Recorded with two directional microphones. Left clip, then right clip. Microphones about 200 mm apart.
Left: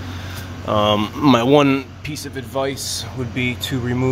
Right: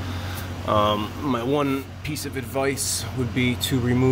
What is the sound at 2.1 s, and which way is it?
Speech, 5° left (ahead or behind).